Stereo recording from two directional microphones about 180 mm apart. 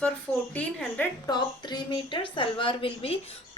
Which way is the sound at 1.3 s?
25° left (ahead or behind).